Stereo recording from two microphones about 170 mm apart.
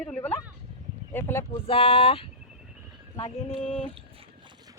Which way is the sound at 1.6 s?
35° left (ahead or behind).